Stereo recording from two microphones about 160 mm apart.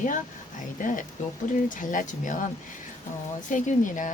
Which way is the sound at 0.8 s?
55° left (ahead or behind).